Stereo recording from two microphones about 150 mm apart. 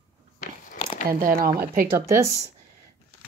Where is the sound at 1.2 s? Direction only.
75° right (ahead or behind).